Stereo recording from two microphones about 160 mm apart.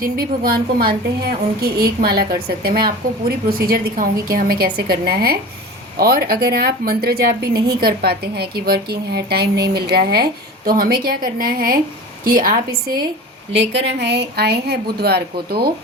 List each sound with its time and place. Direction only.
0.0 s a woman's voice: 70° right (ahead or behind)
13.5 s speech: 90° right